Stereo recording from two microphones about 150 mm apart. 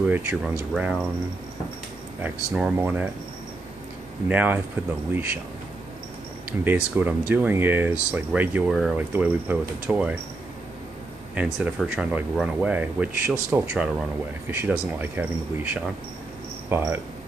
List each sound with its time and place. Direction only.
0.0 s speech: 10° right (ahead or behind)
2.2 s speech: 10° right (ahead or behind)
4.3 s speech: 10° right (ahead or behind)
6.6 s speech: 15° right (ahead or behind)
11.3 s speech: 10° right (ahead or behind)